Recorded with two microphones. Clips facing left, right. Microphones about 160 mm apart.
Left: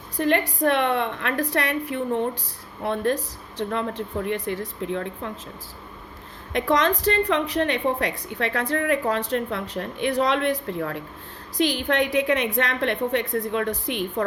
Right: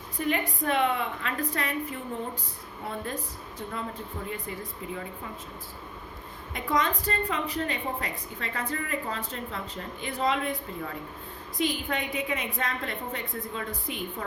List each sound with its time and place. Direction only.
0.2 s a woman's voice: 75° left (ahead or behind)
6.5 s a woman's voice: 90° left; by 11.0 s 75° left (ahead or behind)
11.5 s a woman's voice: 90° left